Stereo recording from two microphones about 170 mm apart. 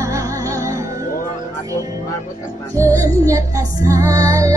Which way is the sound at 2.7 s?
20° right (ahead or behind).